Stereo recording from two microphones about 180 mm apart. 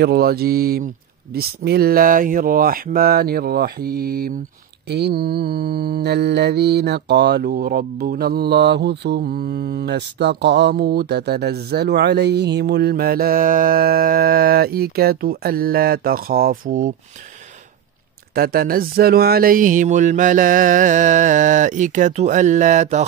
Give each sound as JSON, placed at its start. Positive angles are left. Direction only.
{"t": 0.0, "sound": "mantra", "side_deg": -60}
{"t": 18.3, "sound": "mantra", "side_deg": -55}